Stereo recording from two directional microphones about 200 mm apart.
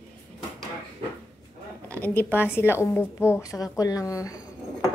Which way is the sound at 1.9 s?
10° left (ahead or behind).